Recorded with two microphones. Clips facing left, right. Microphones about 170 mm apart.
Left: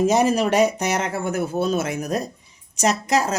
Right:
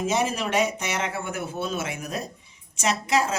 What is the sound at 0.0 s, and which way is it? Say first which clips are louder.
Speech: left 7 dB; 40° left (ahead or behind).